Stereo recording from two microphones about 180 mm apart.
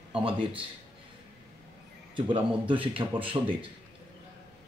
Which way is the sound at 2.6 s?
30° right (ahead or behind).